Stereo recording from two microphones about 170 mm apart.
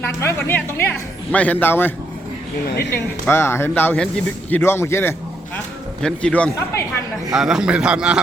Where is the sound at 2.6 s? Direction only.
70° left (ahead or behind).